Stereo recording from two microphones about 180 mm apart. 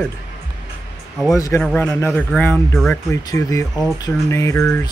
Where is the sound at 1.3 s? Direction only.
15° left (ahead or behind).